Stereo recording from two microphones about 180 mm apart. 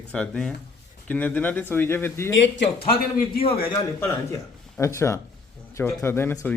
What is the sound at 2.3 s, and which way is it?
Speech, 90° left.